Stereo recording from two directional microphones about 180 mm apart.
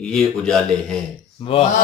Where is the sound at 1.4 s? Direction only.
30° left (ahead or behind).